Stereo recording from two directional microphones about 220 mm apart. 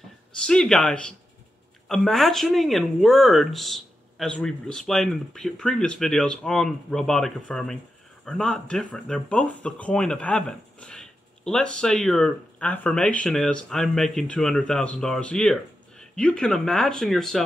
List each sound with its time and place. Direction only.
0.5 s speech: 5° left (ahead or behind)